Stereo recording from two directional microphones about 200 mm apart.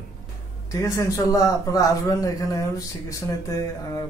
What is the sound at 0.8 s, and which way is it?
A man's voice, 15° left (ahead or behind).